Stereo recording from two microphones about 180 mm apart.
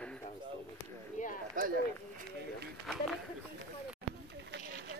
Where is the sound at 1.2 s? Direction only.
45° left (ahead or behind).